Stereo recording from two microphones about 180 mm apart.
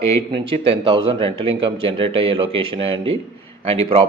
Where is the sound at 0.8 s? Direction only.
25° right (ahead or behind).